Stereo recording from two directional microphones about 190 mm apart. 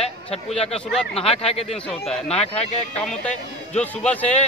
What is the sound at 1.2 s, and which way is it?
Speech, 30° left (ahead or behind).